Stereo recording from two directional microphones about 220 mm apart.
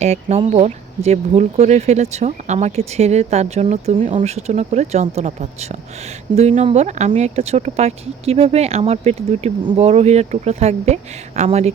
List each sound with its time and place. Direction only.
0.0 s speech: 30° right (ahead or behind)